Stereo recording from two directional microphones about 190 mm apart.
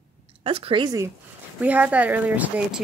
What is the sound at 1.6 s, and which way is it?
Speech, 10° right (ahead or behind).